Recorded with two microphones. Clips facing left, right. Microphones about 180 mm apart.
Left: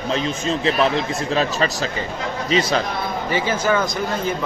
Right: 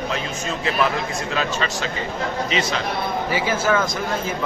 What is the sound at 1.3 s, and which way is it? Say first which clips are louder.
Speech: left 5 dB; 35° left (ahead or behind).